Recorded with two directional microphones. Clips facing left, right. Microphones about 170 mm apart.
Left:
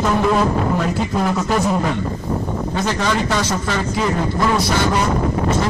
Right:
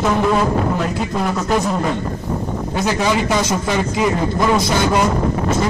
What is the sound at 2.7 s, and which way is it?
A man's voice, 10° right (ahead or behind).